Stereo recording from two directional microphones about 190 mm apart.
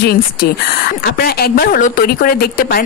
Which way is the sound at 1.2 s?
55° left (ahead or behind).